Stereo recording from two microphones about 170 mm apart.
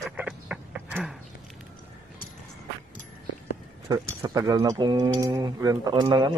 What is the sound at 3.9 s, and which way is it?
Speech, 20° right (ahead or behind).